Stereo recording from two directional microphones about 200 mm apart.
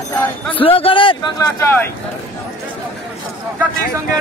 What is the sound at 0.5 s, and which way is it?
Speech, 25° left (ahead or behind).